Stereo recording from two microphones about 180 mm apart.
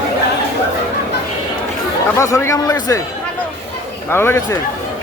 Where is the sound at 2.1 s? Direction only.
15° left (ahead or behind).